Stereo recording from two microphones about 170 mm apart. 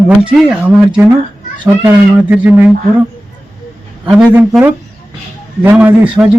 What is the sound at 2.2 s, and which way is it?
Speech, 10° right (ahead or behind).